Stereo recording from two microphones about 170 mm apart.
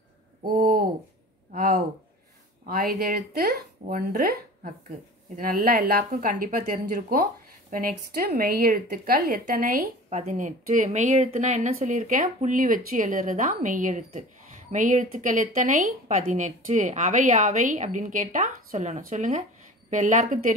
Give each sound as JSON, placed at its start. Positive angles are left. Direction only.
{"t": 0.6, "sound": "a sound", "side_deg": -55}
{"t": 2.6, "sound": "a woman's voice", "side_deg": -60}
{"t": 3.8, "sound": "a woman's voice", "side_deg": -55}
{"t": 10.0, "sound": "speech", "side_deg": -45}